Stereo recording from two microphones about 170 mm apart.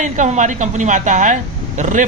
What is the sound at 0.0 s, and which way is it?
A man's voice, 45° right (ahead or behind).